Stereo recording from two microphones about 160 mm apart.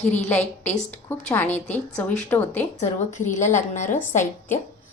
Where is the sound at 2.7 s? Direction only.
45° left (ahead or behind).